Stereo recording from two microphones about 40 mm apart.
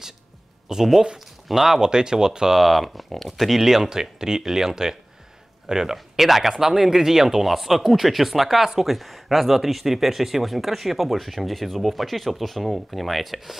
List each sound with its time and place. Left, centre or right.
0.7 s speech: centre
1.8 s speech: centre
2.6 s speech: centre